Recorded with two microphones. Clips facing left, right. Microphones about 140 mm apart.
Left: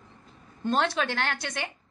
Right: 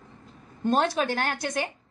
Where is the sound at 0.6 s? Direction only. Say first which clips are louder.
Right 2 dB; 45° right (ahead or behind).